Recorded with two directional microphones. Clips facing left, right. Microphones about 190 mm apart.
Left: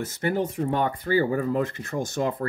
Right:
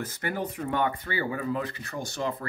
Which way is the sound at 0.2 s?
25° left (ahead or behind).